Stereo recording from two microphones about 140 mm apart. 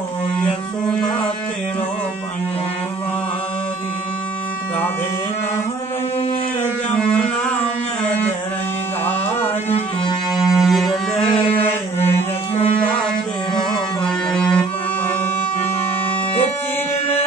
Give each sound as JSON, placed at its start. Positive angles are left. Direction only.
{"t": 9.7, "sound": "music", "side_deg": 45}
{"t": 10.5, "sound": "music", "side_deg": 0}
{"t": 14.0, "sound": "music", "side_deg": 5}